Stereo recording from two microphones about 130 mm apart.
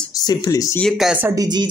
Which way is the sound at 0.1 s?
30° left (ahead or behind).